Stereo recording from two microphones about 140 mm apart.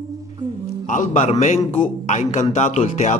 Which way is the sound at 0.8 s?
60° left (ahead or behind).